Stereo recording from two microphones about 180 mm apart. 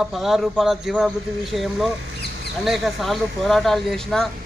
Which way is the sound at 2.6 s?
Centre (ahead or behind).